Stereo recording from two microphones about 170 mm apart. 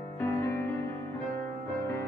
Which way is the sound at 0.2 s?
15° left (ahead or behind).